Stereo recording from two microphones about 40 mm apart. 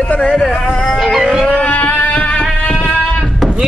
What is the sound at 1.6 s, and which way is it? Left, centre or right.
Music, left.